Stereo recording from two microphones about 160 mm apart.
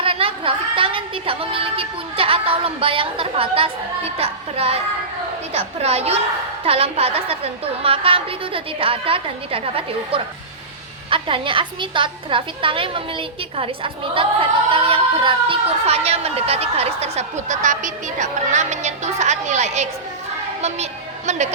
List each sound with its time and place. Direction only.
0.0 s a woman's voice: 35° right (ahead or behind)